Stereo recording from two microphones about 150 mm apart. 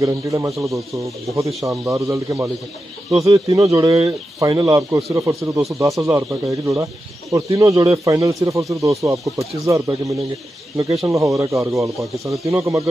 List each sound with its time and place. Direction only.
0.0 s speech: 20° right (ahead or behind)